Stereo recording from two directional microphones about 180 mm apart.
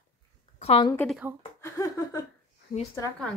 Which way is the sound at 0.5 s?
35° left (ahead or behind).